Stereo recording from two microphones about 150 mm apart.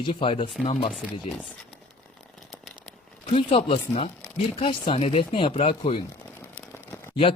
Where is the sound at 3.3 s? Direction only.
40° left (ahead or behind).